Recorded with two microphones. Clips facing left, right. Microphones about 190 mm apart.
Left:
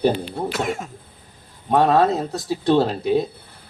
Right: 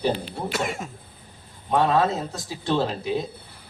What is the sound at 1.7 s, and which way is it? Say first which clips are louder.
Speech: left 4 dB; 40° left (ahead or behind).